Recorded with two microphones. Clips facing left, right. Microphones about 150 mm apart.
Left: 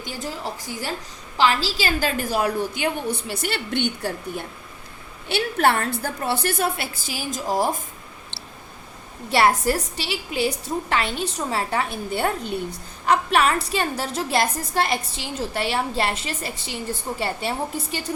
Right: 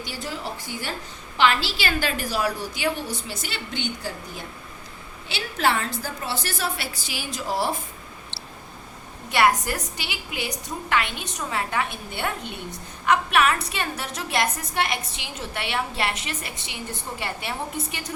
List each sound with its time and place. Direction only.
0.0 s a woman's voice: 45° left (ahead or behind)
9.3 s a woman's voice: 30° left (ahead or behind)